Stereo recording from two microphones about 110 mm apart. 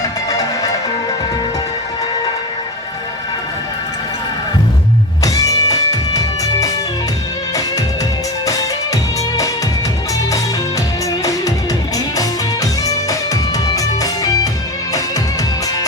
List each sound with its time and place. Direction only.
5.2 s music: 30° left (ahead or behind)
11.2 s music: 30° left (ahead or behind)
12.8 s music: 30° left (ahead or behind)